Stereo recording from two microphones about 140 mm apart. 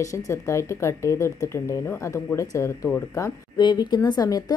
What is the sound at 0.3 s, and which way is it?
A woman's voice, 20° left (ahead or behind).